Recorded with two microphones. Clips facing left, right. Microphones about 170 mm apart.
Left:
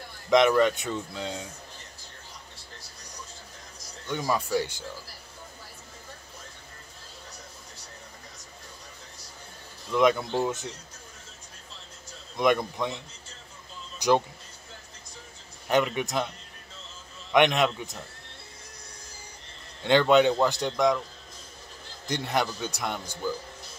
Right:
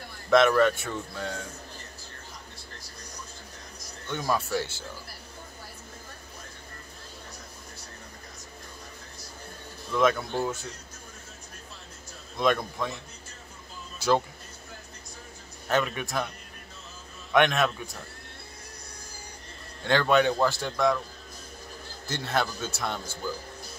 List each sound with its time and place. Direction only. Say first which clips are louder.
0.3 s a man's voice: even; 15° left (ahead or behind)
4.4 s a man's voice: left 2 dB; 15° left (ahead or behind)
9.9 s a man's voice: left 2 dB; 20° left (ahead or behind)
12.4 s a man's voice: left 2 dB; 15° left (ahead or behind)
13.9 s a sound: left 1 dB; 15° left (ahead or behind)
15.7 s a man's voice: left 2 dB; 20° left (ahead or behind)
17.3 s a man's voice: left 1 dB; 15° left (ahead or behind)
19.8 s a man's voice: left 3 dB; 20° left (ahead or behind)
22.0 s a man's voice: left 1 dB; 15° left (ahead or behind)